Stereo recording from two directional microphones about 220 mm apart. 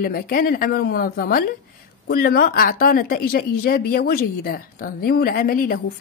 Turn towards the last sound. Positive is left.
turn(degrees=40)  # may be behind; listen again after turning